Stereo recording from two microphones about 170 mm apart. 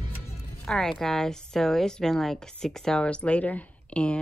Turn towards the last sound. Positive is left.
turn(degrees=5)  # may be behind; listen again after turning